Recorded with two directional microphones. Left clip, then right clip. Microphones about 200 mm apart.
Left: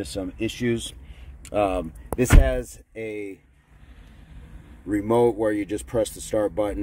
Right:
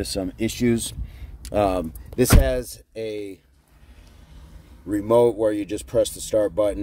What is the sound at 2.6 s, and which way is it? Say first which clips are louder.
Speech: right 3 dB; 20° right (ahead or behind).